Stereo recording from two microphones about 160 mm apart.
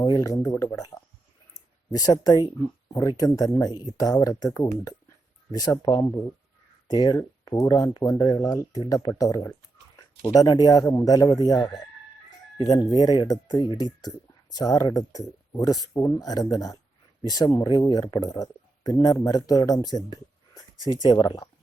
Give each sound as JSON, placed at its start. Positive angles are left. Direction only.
{"t": 0.0, "sound": "speech", "side_deg": 20}
{"t": 1.9, "sound": "speech", "side_deg": 25}
{"t": 5.5, "sound": "speech", "side_deg": 25}